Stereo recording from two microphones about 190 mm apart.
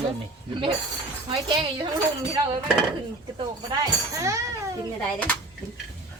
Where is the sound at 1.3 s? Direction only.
25° right (ahead or behind).